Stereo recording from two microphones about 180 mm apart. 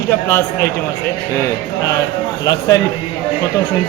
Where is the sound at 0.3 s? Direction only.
15° left (ahead or behind).